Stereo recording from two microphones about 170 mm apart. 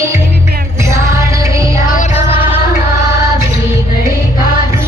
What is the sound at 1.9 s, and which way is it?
Music, 50° left (ahead or behind).